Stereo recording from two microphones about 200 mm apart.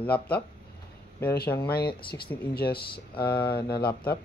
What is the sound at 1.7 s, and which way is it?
Speech, 50° left (ahead or behind).